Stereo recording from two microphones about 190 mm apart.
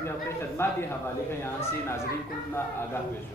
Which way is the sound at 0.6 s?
10° left (ahead or behind).